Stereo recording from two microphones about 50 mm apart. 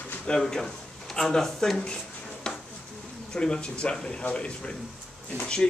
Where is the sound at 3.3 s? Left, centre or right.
Centre.